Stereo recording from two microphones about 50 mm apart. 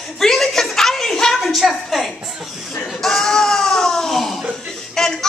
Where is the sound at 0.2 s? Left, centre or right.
Centre.